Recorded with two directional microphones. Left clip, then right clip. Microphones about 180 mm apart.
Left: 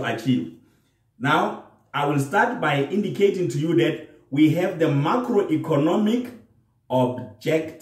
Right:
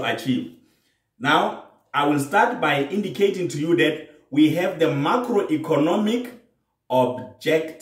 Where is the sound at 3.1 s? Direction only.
30° right (ahead or behind).